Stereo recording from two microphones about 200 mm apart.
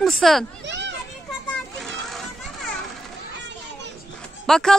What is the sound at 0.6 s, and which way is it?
Children playing, 60° right (ahead or behind).